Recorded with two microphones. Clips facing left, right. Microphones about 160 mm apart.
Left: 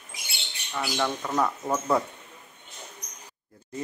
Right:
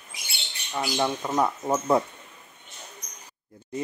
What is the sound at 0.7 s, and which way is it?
Speech, 20° right (ahead or behind).